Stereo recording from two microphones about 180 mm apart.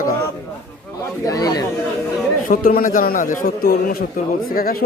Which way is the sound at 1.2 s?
20° left (ahead or behind).